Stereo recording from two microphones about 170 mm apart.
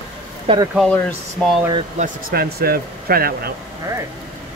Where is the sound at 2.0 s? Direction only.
60° right (ahead or behind).